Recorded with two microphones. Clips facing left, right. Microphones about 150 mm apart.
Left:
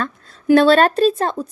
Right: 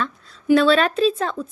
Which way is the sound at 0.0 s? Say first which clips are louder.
Left 1 dB; 45° left (ahead or behind).